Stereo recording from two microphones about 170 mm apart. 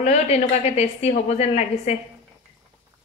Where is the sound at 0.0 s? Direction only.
40° left (ahead or behind).